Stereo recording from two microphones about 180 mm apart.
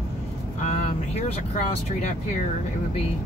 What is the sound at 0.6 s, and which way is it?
Speech, 40° left (ahead or behind).